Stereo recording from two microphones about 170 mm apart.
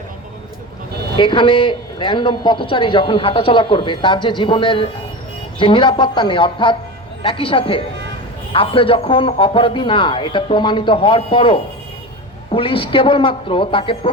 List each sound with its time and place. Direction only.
1.1 s a man's voice: 30° left (ahead or behind)